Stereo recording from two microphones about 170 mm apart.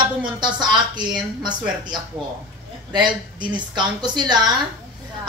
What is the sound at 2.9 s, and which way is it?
Speech, 25° right (ahead or behind).